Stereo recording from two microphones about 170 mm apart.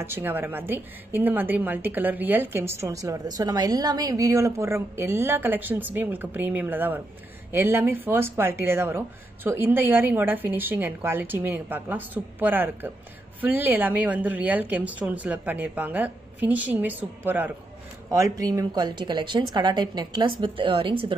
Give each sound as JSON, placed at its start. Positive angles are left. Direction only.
{"t": 0.0, "sound": "a woman's voice", "side_deg": -10}